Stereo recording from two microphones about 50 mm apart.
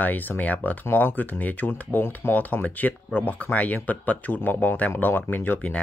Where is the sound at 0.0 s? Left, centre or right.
Left.